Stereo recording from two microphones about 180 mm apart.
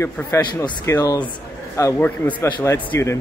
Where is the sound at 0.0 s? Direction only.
15° left (ahead or behind).